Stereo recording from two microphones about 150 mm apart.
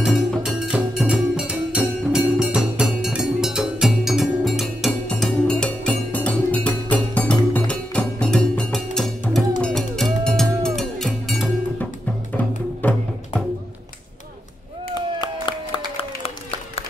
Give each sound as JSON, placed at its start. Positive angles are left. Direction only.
{"t": 0.0, "sound": "music", "side_deg": 0}
{"t": 16.0, "sound": "applause", "side_deg": 40}